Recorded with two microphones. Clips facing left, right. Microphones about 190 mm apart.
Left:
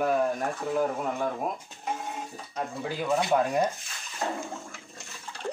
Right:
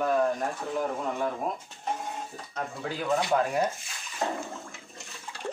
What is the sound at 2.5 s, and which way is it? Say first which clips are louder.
Speech: left 2 dB; 10° left (ahead or behind).